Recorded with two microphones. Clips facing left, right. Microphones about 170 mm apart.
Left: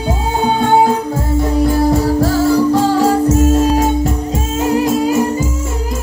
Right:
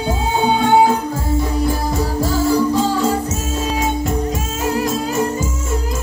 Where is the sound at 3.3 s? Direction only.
60° left (ahead or behind).